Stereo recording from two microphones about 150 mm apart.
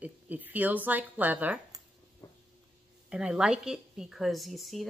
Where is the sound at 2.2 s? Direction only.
25° left (ahead or behind).